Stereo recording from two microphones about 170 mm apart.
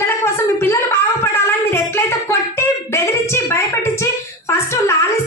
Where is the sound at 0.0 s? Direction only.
15° left (ahead or behind).